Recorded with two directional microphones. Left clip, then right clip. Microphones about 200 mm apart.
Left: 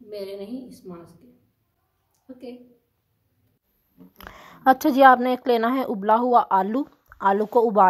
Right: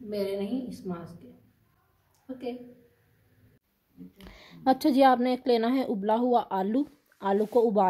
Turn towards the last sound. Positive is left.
turn(degrees=25)  # may be behind; listen again after turning